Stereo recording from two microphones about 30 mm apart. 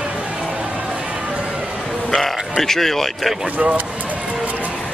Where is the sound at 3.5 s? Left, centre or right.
Right.